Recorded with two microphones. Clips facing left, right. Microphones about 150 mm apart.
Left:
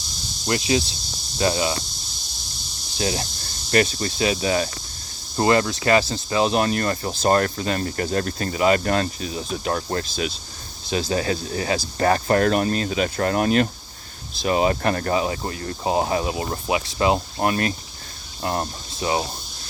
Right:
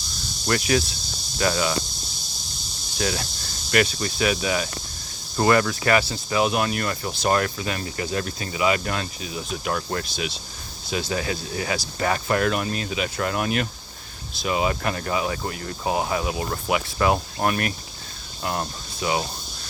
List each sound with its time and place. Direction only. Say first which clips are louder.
0.4 s speech: even; 20° left (ahead or behind)
3.0 s speech: left 1 dB; 30° left (ahead or behind); by 15.2 s 45° left (ahead or behind)
15.2 s speech: left 2 dB; 30° left (ahead or behind)